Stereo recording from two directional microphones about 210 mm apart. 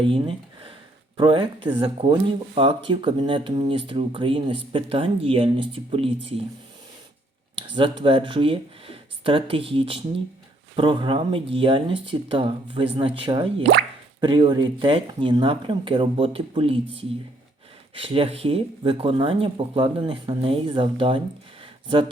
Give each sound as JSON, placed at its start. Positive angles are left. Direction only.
{"t": 0.0, "sound": "speech", "side_deg": -25}
{"t": 7.5, "sound": "speech", "side_deg": -25}